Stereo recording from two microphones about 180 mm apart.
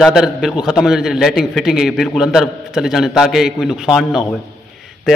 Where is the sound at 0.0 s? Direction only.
Centre (ahead or behind).